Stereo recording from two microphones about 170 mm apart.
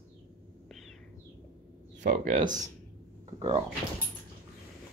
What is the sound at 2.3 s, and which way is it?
Speech, 25° right (ahead or behind).